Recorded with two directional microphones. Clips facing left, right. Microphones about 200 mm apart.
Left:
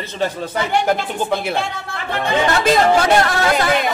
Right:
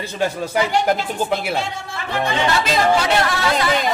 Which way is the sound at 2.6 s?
50° left (ahead or behind).